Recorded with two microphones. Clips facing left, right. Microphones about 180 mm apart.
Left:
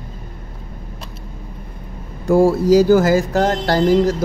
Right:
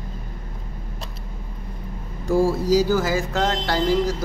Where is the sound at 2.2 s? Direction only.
60° left (ahead or behind).